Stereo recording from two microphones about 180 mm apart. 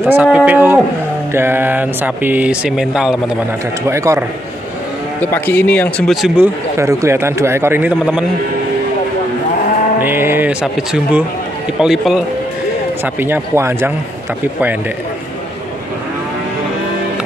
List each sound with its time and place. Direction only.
0.0 s a man's voice: 10° right (ahead or behind)
3.8 s a man's voice: 15° right (ahead or behind)
5.2 s a man's voice: 10° left (ahead or behind)
10.0 s a man's voice: 10° right (ahead or behind)